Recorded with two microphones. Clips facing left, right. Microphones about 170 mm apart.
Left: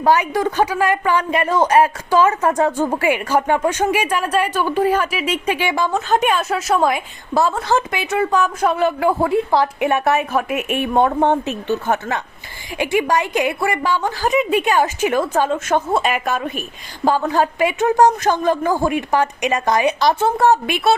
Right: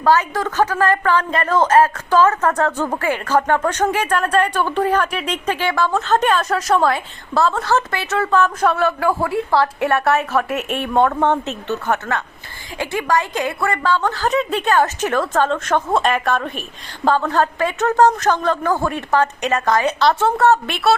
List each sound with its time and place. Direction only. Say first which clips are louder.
0.0 s speech: left 1 dB; 15° left (ahead or behind)